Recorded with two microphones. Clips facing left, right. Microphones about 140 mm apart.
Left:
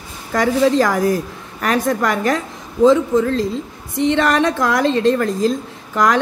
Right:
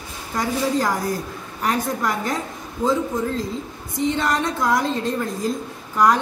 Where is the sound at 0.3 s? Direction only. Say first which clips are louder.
Left 7 dB; 90° left.